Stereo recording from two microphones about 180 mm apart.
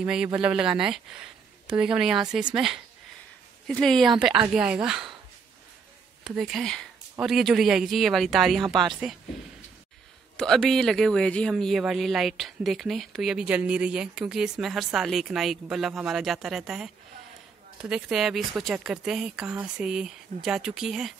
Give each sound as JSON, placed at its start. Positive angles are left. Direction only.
{"t": 0.0, "sound": "speech", "side_deg": -5}
{"t": 6.2, "sound": "speech", "side_deg": 0}
{"t": 10.3, "sound": "speech", "side_deg": 0}